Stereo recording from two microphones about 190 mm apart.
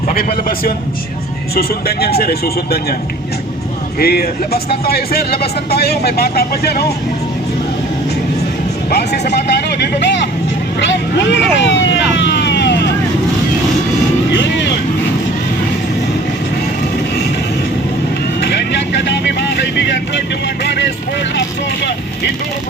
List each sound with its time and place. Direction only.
0.1 s a man's voice: 50° left (ahead or behind)
4.0 s speech: 55° left (ahead or behind)
8.9 s speech: 60° left (ahead or behind)
12.1 s vehicle: 65° left (ahead or behind)
18.3 s vehicle: 65° left (ahead or behind)